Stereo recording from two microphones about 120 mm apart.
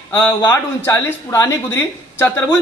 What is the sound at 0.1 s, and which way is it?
A man's voice, 20° left (ahead or behind).